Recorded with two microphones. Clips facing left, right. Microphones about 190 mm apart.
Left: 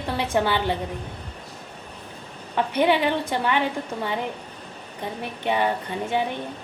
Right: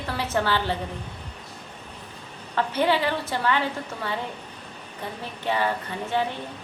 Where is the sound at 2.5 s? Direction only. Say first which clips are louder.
Left 2 dB; 15° left (ahead or behind).